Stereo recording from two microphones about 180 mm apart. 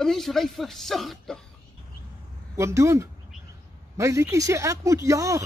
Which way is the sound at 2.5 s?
15° right (ahead or behind).